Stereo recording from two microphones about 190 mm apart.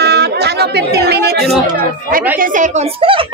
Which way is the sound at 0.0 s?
60° right (ahead or behind).